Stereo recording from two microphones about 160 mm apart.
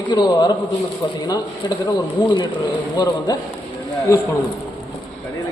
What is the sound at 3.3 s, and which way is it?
Speech, 25° left (ahead or behind).